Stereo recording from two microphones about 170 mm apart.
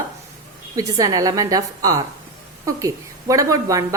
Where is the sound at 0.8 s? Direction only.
20° right (ahead or behind).